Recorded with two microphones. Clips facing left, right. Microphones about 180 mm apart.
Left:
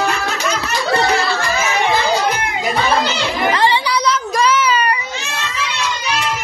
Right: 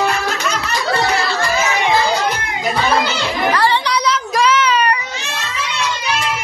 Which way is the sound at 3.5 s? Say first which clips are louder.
Even; 20° left (ahead or behind).